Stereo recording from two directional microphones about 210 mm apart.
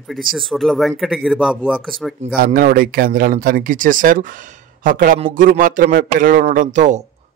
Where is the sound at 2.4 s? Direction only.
45° right (ahead or behind).